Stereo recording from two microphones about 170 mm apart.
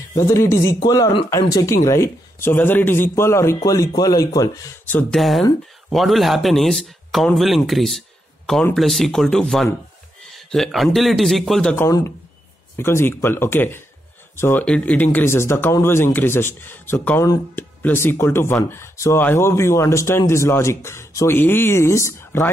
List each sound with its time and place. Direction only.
0.3 s a man's voice: 15° left (ahead or behind)
11.7 s a man's voice: 15° left (ahead or behind)